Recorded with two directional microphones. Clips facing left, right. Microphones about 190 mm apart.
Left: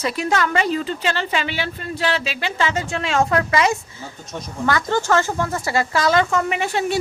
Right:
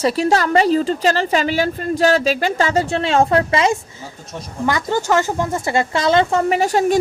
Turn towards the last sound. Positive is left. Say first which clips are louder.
# right 6 dB
turn(degrees=-40)  # may be behind; listen again after turning